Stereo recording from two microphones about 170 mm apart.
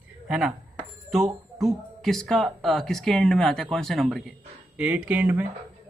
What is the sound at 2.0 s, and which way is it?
Speech, centre (ahead or behind).